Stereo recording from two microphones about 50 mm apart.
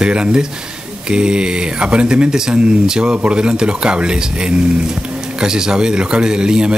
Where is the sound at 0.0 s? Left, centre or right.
Centre.